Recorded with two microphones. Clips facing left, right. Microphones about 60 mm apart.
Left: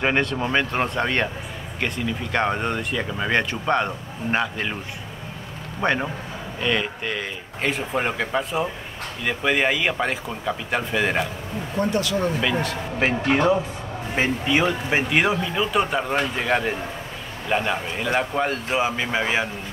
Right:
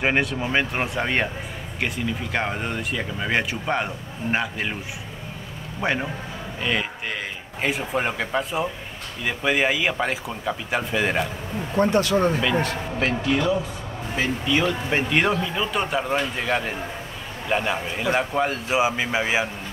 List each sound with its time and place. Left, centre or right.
0.0 s speech: centre
2.3 s speech: centre
5.8 s speech: centre
11.7 s speech: right
13.3 s speech: left; by 19.5 s centre